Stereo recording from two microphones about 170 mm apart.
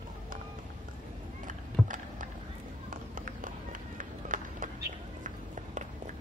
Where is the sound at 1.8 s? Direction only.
50° right (ahead or behind).